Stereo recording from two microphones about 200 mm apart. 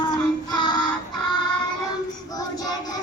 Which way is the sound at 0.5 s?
20° left (ahead or behind).